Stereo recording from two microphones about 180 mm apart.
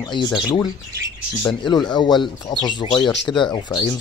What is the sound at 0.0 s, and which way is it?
Speech, 25° left (ahead or behind).